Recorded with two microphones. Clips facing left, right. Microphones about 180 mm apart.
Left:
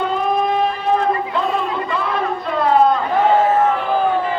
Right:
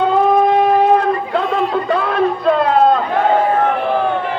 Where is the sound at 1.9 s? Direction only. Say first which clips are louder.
Right 5 dB; 65° right (ahead or behind).